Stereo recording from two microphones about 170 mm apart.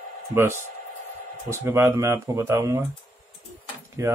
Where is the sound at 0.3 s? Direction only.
15° right (ahead or behind).